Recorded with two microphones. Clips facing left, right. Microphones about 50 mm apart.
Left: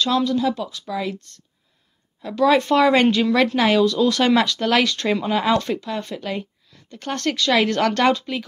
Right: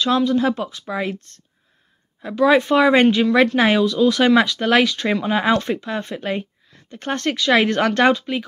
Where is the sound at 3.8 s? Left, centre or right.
Centre.